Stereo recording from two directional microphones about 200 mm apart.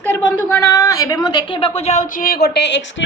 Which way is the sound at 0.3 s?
15° left (ahead or behind).